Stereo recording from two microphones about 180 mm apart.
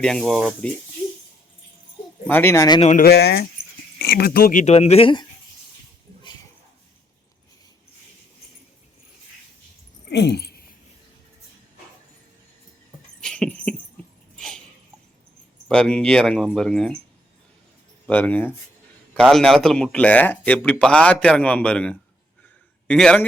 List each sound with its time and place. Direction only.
0.0 s speech: centre (ahead or behind)
2.2 s speech: 10° left (ahead or behind)
3.0 s speech: 65° left (ahead or behind)
4.6 s speech: 35° left (ahead or behind)
10.1 s a sound: 65° left (ahead or behind)
13.2 s dog: 5° left (ahead or behind)
14.3 s a sound: 5° left (ahead or behind)
15.7 s speech: 5° left (ahead or behind)
18.1 s speech: 10° left (ahead or behind)